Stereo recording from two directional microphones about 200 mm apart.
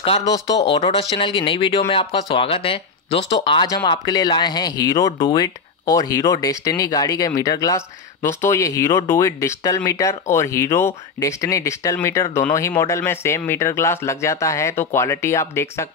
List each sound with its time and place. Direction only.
0.0 s speech: 20° left (ahead or behind)